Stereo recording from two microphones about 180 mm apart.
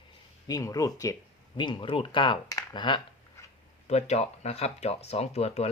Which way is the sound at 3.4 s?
15° left (ahead or behind).